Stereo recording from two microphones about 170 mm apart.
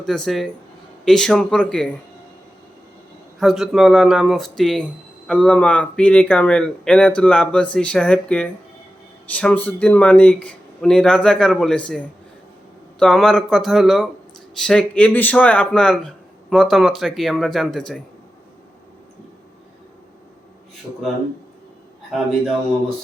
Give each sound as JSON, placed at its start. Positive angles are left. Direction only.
{"t": 0.0, "sound": "speech", "side_deg": 5}
{"t": 3.4, "sound": "speech", "side_deg": 0}